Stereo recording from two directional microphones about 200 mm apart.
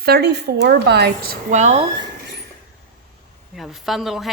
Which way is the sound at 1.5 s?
35° right (ahead or behind).